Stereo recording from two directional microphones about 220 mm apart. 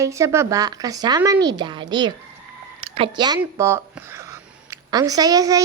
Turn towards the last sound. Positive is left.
turn(degrees=-15)  # may be behind; listen again after turning